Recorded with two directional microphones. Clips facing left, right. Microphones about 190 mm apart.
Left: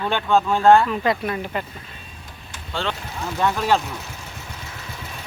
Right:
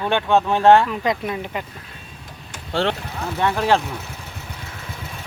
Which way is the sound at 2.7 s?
70° right (ahead or behind).